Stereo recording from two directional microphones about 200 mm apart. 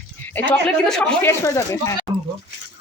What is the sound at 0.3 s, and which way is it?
Speech, 5° left (ahead or behind).